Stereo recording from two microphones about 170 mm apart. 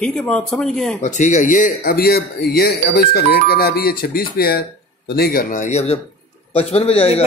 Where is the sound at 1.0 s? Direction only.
45° left (ahead or behind).